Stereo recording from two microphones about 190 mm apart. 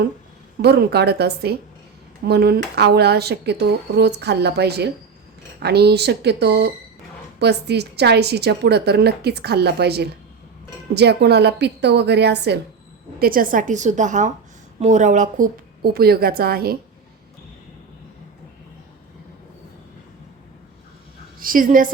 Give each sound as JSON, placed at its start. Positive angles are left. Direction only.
{"t": 0.6, "sound": "a woman's voice", "side_deg": -60}
{"t": 13.1, "sound": "a woman's voice", "side_deg": -50}
{"t": 21.3, "sound": "a woman's voice", "side_deg": -45}